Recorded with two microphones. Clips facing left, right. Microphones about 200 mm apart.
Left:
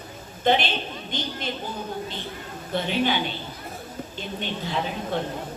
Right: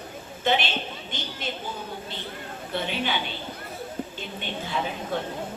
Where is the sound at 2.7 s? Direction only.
45° left (ahead or behind).